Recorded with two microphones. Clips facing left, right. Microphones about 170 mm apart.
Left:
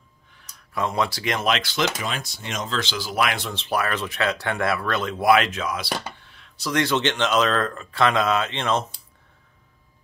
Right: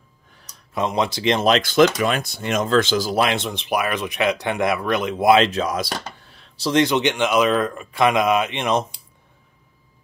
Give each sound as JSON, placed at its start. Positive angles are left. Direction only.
{"t": 0.7, "sound": "speech", "side_deg": -20}
{"t": 1.5, "sound": "speech", "side_deg": -50}
{"t": 2.0, "sound": "speech", "side_deg": -60}
{"t": 3.2, "sound": "speech", "side_deg": -25}